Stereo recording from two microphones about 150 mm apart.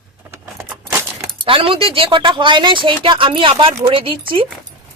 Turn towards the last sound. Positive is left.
turn(degrees=-35)  # may be behind; listen again after turning